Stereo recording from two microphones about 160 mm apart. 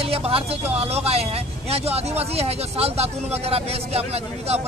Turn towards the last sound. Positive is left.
turn(degrees=-40)  # may be behind; listen again after turning